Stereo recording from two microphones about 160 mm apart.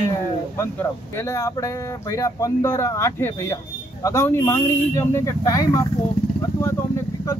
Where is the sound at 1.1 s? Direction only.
20° left (ahead or behind).